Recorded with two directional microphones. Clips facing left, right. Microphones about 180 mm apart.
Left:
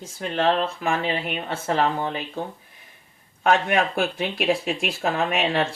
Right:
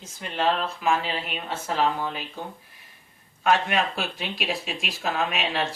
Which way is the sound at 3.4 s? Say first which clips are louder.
Left 3 dB; 55° left (ahead or behind).